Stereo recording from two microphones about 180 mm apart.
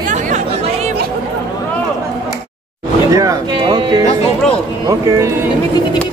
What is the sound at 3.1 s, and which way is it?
Speech, 20° right (ahead or behind).